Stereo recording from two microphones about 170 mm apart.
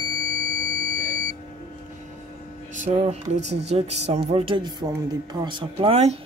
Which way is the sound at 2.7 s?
45° right (ahead or behind).